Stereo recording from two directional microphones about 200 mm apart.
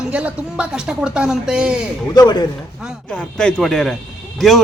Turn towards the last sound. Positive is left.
turn(degrees=0)  # may be behind; listen again after turning